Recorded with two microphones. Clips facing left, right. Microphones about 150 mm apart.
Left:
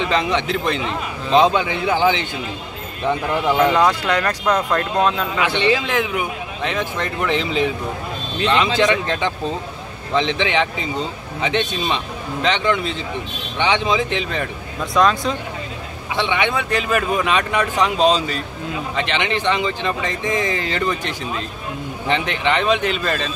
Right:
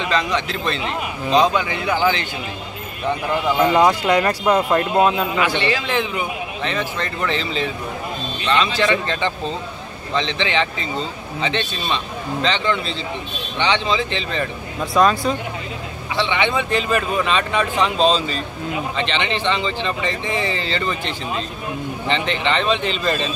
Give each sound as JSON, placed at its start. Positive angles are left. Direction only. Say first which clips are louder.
{"t": 0.1, "sound": "a man's voice", "louder": "right 1 dB", "side_deg": 20}
{"t": 3.6, "sound": "speech", "louder": "right 4 dB", "side_deg": -10}
{"t": 5.4, "sound": "a man's voice", "louder": "left 2 dB", "side_deg": 20}
{"t": 5.7, "sound": "speech", "louder": "left 3 dB", "side_deg": 10}
{"t": 8.7, "sound": "speech", "louder": "left 2 dB", "side_deg": 15}
{"t": 15.0, "sound": "speech", "louder": "right 1 dB", "side_deg": -5}
{"t": 16.2, "sound": "speech", "louder": "even", "side_deg": 10}
{"t": 22.0, "sound": "speech", "louder": "left 1 dB", "side_deg": 10}